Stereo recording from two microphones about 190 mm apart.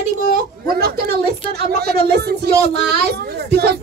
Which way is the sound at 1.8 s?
55° right (ahead or behind).